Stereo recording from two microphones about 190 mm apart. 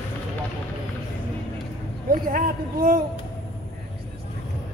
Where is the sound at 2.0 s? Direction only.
50° right (ahead or behind).